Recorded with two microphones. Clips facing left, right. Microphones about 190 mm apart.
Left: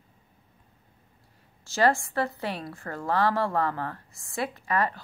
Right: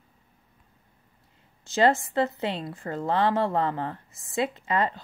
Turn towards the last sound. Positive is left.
turn(degrees=-20)  # may be behind; listen again after turning